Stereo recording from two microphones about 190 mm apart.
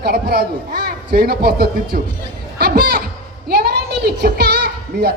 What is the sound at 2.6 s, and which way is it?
Speech, 60° right (ahead or behind).